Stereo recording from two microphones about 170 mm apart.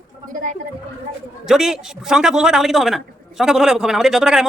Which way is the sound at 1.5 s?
Centre (ahead or behind).